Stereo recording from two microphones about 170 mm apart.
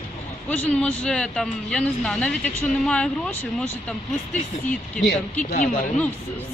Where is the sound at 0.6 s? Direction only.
10° left (ahead or behind).